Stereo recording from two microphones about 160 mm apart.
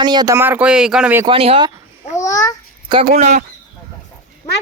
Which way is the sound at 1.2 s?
35° right (ahead or behind).